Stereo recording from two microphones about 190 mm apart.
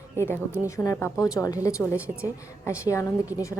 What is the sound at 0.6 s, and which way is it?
A woman's voice, 15° left (ahead or behind).